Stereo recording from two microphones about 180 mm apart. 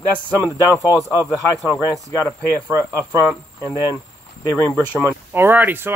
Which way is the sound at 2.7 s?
15° right (ahead or behind).